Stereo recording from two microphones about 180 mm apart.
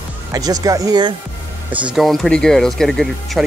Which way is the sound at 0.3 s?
20° right (ahead or behind).